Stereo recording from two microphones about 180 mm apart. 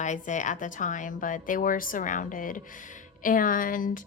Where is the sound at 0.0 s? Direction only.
40° left (ahead or behind).